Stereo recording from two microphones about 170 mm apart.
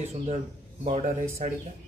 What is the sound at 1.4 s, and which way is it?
Speech, 50° right (ahead or behind).